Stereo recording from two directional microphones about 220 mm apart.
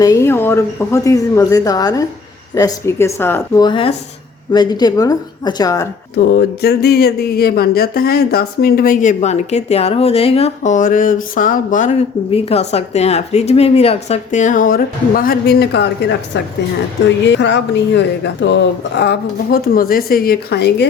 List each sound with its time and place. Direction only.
0.0 s speech: 15° left (ahead or behind)
6.3 s speech: 45° left (ahead or behind)